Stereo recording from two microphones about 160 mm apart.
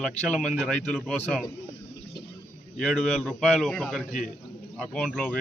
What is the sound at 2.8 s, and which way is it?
A man's voice, centre (ahead or behind).